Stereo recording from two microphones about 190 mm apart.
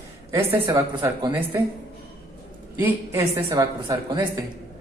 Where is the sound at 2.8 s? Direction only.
15° right (ahead or behind).